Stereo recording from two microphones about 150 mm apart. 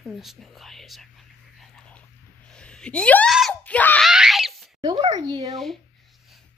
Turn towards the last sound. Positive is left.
turn(degrees=0)  # may be behind; listen again after turning